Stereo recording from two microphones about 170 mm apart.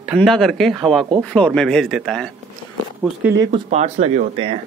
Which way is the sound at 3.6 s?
45° right (ahead or behind).